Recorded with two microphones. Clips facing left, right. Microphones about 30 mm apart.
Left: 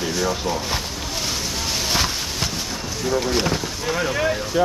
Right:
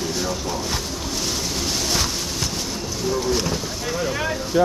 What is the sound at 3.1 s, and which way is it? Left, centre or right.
Speech, left.